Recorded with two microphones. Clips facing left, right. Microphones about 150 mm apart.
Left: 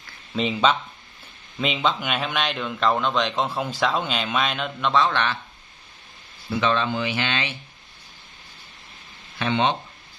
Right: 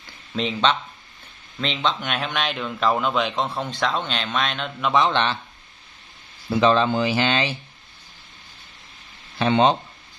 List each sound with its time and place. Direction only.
0.4 s a man's voice: 5° left (ahead or behind)
4.9 s a man's voice: 20° right (ahead or behind)
6.6 s speech: 35° right (ahead or behind)
9.4 s speech: 35° right (ahead or behind)